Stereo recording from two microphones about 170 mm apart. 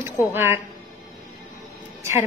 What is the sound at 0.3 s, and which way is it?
Speech, 15° right (ahead or behind).